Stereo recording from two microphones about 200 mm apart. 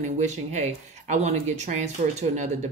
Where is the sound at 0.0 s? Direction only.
35° right (ahead or behind).